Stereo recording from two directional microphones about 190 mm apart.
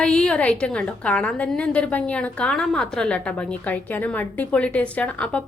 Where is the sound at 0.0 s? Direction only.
5° left (ahead or behind).